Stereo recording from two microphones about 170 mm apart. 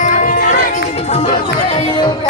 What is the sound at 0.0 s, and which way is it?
Music, 50° left (ahead or behind).